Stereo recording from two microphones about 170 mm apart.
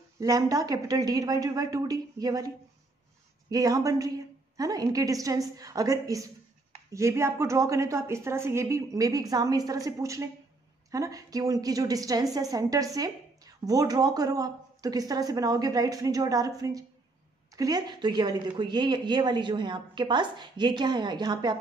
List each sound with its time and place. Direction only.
0.2 s a woman's voice: 20° right (ahead or behind)